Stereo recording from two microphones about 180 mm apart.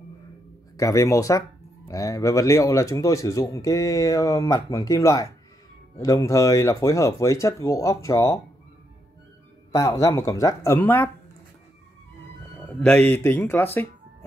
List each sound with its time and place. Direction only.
0.7 s speech: 15° left (ahead or behind)
9.7 s speech: 20° left (ahead or behind)
12.6 s speech: 5° left (ahead or behind)